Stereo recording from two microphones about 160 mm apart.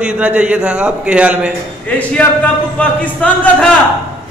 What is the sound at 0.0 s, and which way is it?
A man's voice, 10° right (ahead or behind).